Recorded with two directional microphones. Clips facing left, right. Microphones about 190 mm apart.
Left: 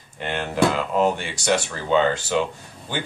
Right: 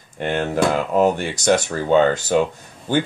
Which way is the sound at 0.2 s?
50° right (ahead or behind).